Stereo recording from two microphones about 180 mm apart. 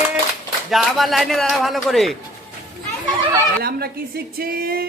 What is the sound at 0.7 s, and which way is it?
A man's voice, centre (ahead or behind).